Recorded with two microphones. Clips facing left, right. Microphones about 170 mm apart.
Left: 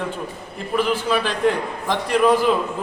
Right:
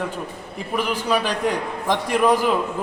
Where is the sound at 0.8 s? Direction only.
15° right (ahead or behind).